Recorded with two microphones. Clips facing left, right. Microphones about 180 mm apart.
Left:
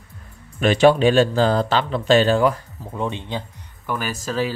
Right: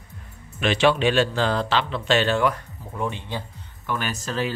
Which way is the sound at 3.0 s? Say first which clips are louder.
Left 3 dB; 20° left (ahead or behind).